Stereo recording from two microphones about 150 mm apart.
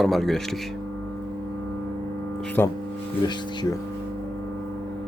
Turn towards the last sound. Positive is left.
turn(degrees=30)  # may be behind; listen again after turning